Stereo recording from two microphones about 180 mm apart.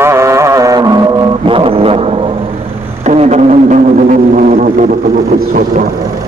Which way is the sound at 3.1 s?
40° right (ahead or behind).